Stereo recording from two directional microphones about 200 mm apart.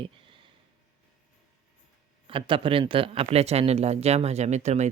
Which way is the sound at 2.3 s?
25° right (ahead or behind).